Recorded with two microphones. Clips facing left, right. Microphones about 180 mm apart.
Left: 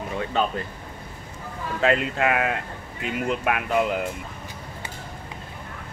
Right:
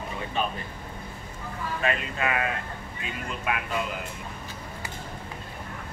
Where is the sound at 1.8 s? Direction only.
80° left.